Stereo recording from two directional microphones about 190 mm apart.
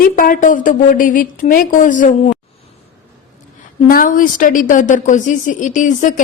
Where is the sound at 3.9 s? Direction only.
50° left (ahead or behind).